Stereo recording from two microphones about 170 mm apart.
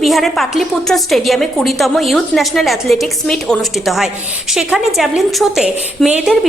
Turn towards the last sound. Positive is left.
turn(degrees=-5)  # may be behind; listen again after turning